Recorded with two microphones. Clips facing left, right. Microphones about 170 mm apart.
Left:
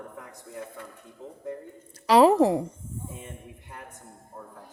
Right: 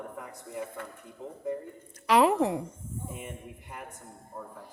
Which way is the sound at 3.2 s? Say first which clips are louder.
Right 1 dB; 10° right (ahead or behind).